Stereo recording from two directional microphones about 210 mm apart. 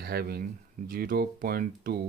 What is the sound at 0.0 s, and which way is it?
Speech, 50° right (ahead or behind).